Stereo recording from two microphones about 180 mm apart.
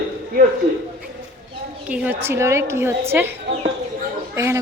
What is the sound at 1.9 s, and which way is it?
A woman's voice, 10° right (ahead or behind).